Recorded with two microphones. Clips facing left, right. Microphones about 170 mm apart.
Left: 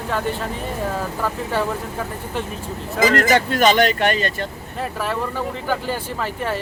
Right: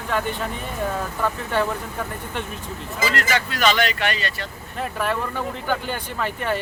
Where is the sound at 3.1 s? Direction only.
45° left (ahead or behind).